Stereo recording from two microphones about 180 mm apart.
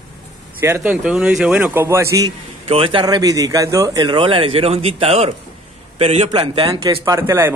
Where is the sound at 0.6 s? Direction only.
10° right (ahead or behind).